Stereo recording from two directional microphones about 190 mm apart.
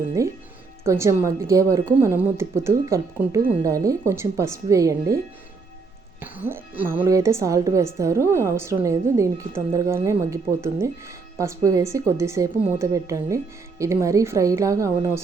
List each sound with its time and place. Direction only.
0.2 s a woman's voice: 15° right (ahead or behind)
6.3 s a woman's voice: 10° right (ahead or behind)